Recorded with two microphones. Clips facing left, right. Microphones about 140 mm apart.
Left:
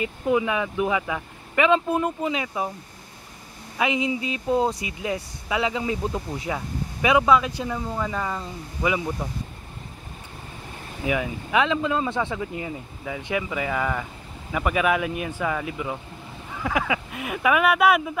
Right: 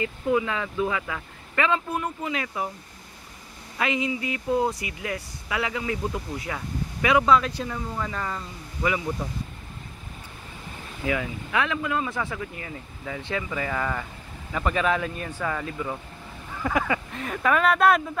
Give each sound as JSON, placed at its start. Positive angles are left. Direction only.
{"t": 0.0, "sound": "speech", "side_deg": 20}
{"t": 3.7, "sound": "speech", "side_deg": 20}
{"t": 11.1, "sound": "speech", "side_deg": 20}